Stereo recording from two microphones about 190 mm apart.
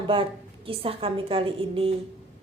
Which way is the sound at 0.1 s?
30° right (ahead or behind).